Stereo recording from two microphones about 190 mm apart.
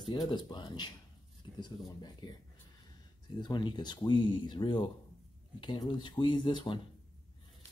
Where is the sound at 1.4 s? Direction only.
25° left (ahead or behind).